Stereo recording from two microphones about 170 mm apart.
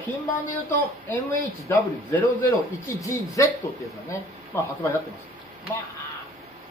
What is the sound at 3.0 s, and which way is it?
Speech, 20° left (ahead or behind).